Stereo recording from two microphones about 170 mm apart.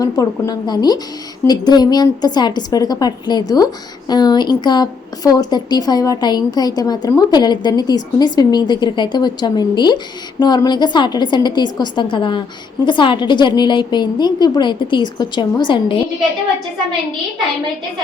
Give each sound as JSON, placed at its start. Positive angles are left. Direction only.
{"t": 0.0, "sound": "speech", "side_deg": 20}